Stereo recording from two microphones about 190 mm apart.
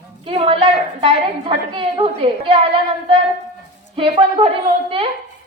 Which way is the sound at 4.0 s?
25° right (ahead or behind).